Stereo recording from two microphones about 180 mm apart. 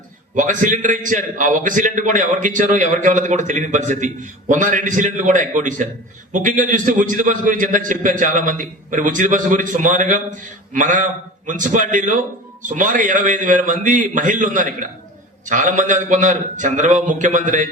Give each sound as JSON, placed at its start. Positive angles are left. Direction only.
{"t": 0.3, "sound": "a man's voice", "side_deg": -45}